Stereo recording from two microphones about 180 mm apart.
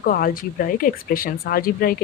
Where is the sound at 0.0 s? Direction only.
50° left (ahead or behind).